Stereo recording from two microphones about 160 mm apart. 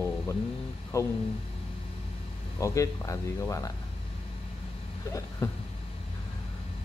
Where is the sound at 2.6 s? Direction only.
20° left (ahead or behind).